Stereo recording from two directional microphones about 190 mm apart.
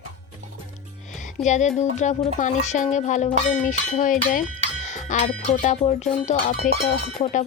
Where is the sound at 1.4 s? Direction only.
40° left (ahead or behind).